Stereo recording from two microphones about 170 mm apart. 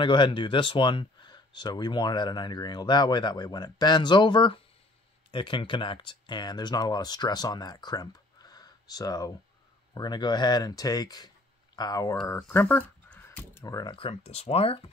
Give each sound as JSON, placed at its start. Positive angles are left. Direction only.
{"t": 0.0, "sound": "speech", "side_deg": 30}
{"t": 12.4, "sound": "speech", "side_deg": 10}